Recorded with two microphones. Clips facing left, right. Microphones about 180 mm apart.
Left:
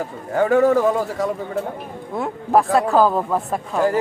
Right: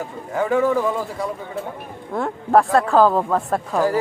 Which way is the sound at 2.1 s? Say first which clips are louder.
Right 1 dB; 5° left (ahead or behind).